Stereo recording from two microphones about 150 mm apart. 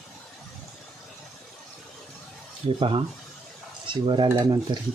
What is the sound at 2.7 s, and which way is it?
Speech, 35° right (ahead or behind).